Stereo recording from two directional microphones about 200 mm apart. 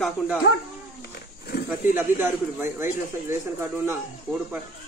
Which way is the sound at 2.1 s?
10° right (ahead or behind).